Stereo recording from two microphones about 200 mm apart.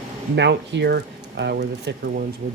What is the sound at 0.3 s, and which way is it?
Speech, 60° right (ahead or behind).